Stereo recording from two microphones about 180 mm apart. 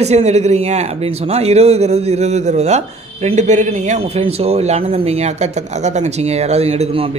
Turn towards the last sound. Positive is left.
turn(degrees=-35)  # may be behind; listen again after turning